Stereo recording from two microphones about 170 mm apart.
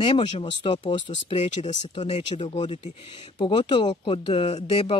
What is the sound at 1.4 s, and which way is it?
Speech, 45° left (ahead or behind).